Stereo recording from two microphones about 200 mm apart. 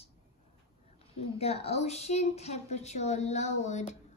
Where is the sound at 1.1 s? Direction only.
30° left (ahead or behind).